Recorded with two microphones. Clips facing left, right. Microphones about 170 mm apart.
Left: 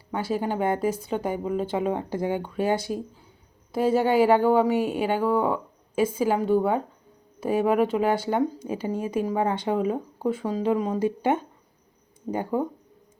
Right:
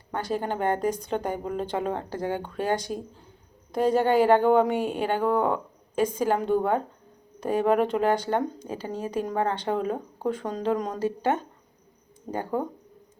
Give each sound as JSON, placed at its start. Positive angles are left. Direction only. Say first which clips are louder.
{"t": 0.1, "sound": "speech", "louder": "left 2 dB", "side_deg": 5}